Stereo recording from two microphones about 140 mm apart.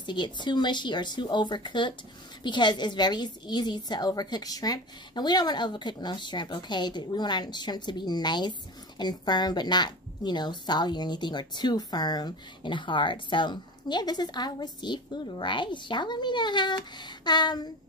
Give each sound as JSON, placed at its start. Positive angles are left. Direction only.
{"t": 0.0, "sound": "a woman's voice", "side_deg": 35}